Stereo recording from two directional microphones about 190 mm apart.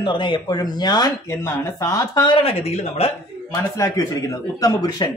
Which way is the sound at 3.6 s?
15° left (ahead or behind).